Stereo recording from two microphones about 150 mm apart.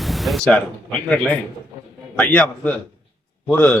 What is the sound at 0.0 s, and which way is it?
A man's voice, centre (ahead or behind).